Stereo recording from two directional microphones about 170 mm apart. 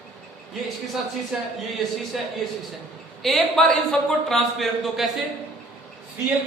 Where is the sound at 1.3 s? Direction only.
Centre (ahead or behind).